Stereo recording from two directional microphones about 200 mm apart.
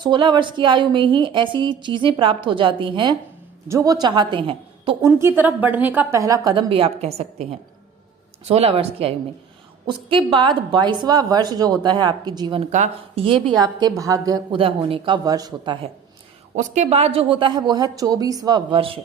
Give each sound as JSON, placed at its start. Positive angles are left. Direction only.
{"t": 0.0, "sound": "a woman's voice", "side_deg": -25}
{"t": 5.0, "sound": "a woman's voice", "side_deg": -10}
{"t": 12.7, "sound": "a woman's voice", "side_deg": -35}
{"t": 16.6, "sound": "a woman's voice", "side_deg": -35}